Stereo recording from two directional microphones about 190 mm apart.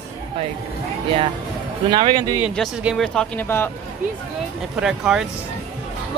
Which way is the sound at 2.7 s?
Centre (ahead or behind).